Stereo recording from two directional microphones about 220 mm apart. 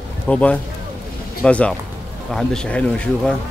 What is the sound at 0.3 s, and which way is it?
Speech, 5° left (ahead or behind).